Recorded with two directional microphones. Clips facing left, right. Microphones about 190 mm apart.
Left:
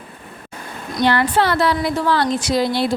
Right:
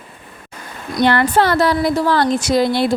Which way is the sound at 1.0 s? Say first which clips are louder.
Right 2 dB; 55° right (ahead or behind).